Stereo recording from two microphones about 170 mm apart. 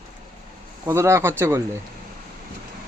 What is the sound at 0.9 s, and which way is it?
Speech, 15° right (ahead or behind).